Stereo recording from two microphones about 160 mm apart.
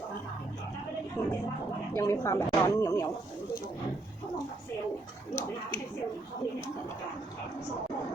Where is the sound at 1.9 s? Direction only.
15° left (ahead or behind).